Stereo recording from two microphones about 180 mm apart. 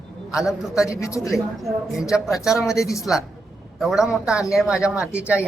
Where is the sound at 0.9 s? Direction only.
15° left (ahead or behind).